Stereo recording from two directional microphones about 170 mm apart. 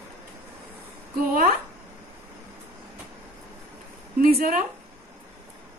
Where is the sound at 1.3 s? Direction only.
60° right (ahead or behind).